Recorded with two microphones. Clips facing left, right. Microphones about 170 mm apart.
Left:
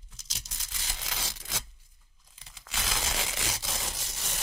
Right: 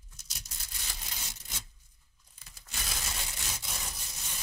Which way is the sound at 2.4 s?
90° left.